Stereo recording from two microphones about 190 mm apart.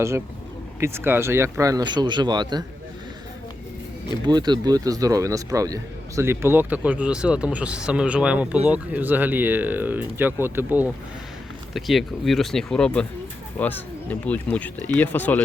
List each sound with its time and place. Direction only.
0.8 s speech: 15° right (ahead or behind)
4.3 s speech: 20° right (ahead or behind); by 15.4 s 10° left (ahead or behind)